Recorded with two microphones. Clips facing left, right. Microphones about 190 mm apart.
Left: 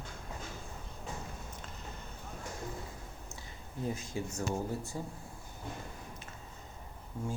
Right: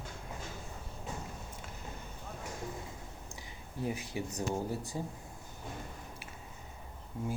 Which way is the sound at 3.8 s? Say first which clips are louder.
Even; 15° right (ahead or behind).